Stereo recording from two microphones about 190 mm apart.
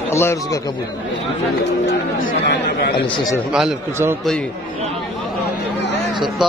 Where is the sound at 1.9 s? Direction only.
60° left (ahead or behind).